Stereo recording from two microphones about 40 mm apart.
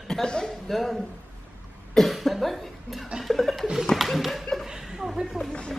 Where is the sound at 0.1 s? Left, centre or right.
Centre.